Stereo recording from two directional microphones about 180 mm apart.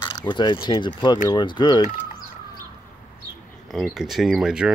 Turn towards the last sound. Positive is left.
turn(degrees=-5)  # may be behind; listen again after turning